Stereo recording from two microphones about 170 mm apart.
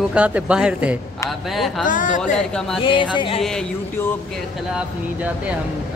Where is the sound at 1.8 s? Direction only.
50° left (ahead or behind).